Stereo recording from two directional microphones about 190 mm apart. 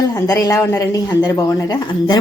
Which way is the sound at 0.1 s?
20° left (ahead or behind).